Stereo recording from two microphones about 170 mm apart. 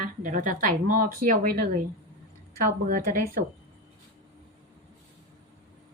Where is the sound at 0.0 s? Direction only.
50° right (ahead or behind).